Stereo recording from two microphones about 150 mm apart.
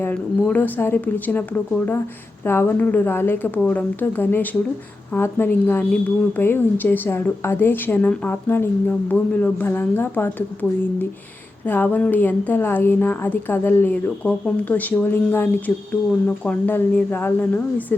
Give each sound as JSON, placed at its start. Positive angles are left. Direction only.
{"t": 0.0, "sound": "a woman's voice", "side_deg": 10}